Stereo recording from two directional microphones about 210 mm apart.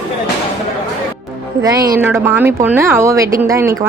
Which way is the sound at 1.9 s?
5° right (ahead or behind).